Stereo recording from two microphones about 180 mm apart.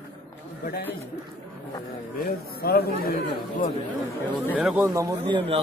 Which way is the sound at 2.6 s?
60° left (ahead or behind).